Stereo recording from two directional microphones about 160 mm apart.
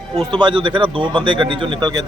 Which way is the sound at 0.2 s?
25° right (ahead or behind).